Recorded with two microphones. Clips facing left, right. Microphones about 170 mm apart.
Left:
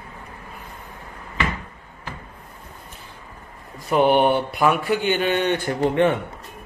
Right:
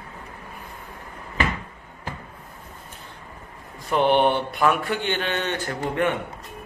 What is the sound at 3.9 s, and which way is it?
Speech, 10° left (ahead or behind).